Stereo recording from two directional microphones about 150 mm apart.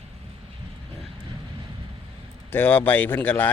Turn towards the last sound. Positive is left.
turn(degrees=10)  # may be behind; listen again after turning